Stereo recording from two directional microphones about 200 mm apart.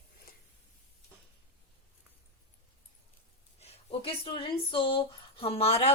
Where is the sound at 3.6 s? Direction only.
30° left (ahead or behind).